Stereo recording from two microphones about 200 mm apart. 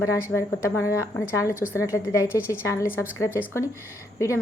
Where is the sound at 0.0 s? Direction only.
15° left (ahead or behind).